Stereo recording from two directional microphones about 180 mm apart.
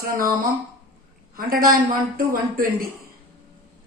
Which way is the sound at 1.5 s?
55° right (ahead or behind).